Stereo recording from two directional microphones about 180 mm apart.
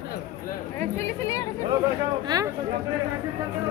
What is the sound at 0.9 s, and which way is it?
Speech, 15° left (ahead or behind).